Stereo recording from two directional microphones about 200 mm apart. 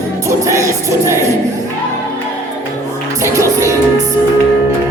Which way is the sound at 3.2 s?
15° right (ahead or behind).